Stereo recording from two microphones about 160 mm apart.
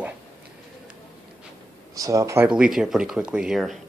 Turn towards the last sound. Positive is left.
turn(degrees=0)  # may be behind; listen again after turning